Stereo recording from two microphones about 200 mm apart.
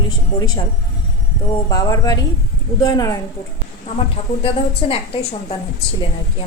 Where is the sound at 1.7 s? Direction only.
20° left (ahead or behind).